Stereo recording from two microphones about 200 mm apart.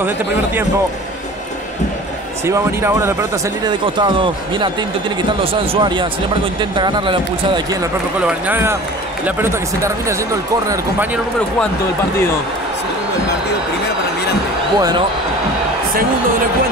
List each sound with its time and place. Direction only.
2.4 s speech: 10° right (ahead or behind)
8.3 s speech: 10° right (ahead or behind)
14.8 s speech: 20° right (ahead or behind)